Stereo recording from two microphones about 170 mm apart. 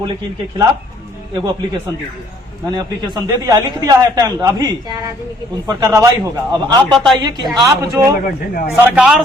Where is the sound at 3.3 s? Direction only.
20° right (ahead or behind).